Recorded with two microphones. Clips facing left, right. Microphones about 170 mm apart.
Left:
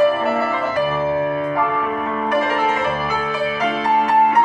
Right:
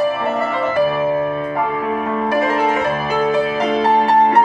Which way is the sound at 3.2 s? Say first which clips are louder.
Right 5 dB; 40° right (ahead or behind).